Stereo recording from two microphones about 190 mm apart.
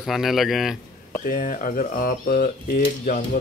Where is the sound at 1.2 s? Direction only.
45° left (ahead or behind).